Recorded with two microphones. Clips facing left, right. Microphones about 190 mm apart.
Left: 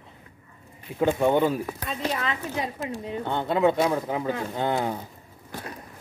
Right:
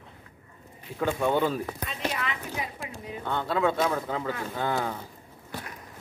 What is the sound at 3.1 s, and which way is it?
A woman's voice, 25° left (ahead or behind).